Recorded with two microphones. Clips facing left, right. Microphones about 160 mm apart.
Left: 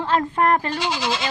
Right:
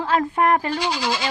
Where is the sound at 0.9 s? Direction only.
25° left (ahead or behind).